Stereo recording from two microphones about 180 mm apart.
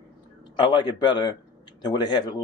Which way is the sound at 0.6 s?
25° left (ahead or behind).